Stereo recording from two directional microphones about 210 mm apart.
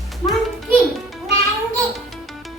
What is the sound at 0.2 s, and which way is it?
Music, 20° left (ahead or behind).